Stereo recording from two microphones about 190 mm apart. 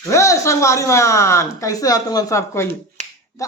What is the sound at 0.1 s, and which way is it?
Speech, 15° left (ahead or behind).